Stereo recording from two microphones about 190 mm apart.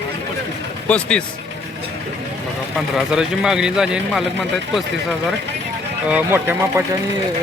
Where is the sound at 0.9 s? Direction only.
5° left (ahead or behind).